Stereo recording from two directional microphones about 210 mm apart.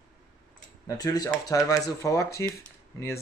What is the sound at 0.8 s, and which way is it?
Speech, 20° left (ahead or behind).